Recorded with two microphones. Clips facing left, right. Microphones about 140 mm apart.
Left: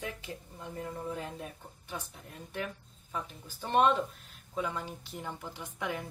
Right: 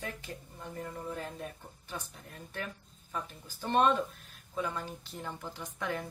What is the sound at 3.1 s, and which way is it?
Speech, 15° left (ahead or behind).